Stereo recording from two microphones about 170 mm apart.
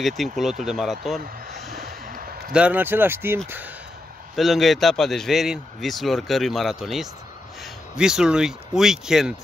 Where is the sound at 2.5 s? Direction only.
5° right (ahead or behind).